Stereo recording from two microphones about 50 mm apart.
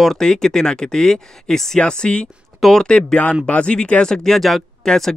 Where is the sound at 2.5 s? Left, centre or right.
Centre.